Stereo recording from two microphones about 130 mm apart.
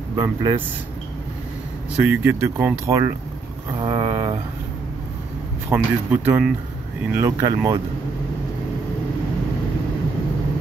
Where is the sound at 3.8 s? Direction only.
35° right (ahead or behind).